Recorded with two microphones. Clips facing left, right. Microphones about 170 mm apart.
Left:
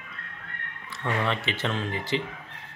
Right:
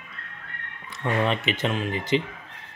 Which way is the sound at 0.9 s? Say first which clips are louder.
Right 4 dB; 20° right (ahead or behind).